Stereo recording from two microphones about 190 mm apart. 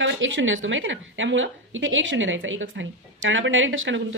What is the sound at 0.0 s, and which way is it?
A woman's voice, 80° right.